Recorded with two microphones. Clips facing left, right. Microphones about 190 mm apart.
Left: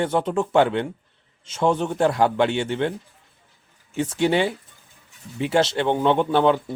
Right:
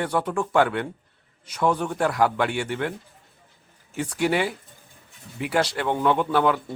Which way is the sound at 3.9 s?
25° left (ahead or behind).